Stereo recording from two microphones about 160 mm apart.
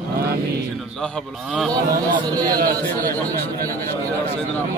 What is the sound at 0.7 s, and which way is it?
Speech, centre (ahead or behind).